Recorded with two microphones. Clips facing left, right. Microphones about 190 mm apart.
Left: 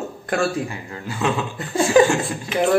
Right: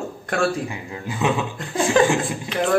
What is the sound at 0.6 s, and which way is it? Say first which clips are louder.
Speech: right 1 dB; 15° right (ahead or behind).